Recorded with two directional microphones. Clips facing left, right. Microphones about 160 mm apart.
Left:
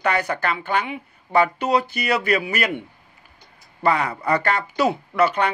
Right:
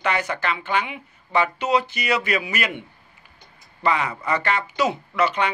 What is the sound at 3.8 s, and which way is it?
Speech, 40° left (ahead or behind).